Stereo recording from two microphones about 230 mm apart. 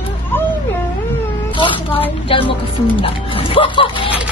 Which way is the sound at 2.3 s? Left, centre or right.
Left.